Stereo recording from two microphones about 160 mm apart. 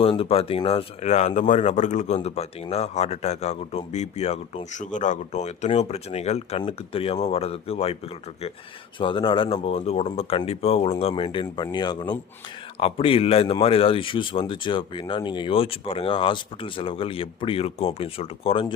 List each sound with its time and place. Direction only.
0.0 s speech: 35° left (ahead or behind)
9.0 s speech: 30° left (ahead or behind)